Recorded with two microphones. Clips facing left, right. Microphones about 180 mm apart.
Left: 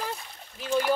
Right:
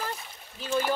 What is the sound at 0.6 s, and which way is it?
Speech, 15° left (ahead or behind).